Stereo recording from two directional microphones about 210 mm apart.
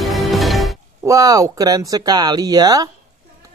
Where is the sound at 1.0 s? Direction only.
15° right (ahead or behind).